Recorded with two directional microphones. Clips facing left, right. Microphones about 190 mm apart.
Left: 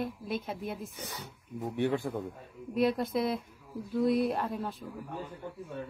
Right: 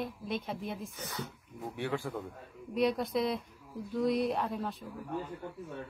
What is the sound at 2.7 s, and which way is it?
A woman's voice, centre (ahead or behind).